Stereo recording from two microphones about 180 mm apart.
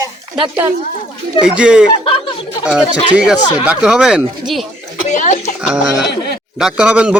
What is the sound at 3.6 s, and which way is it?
Speech, 5° right (ahead or behind).